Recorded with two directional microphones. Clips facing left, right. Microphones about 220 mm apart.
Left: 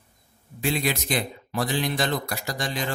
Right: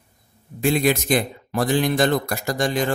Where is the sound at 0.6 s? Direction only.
50° right (ahead or behind).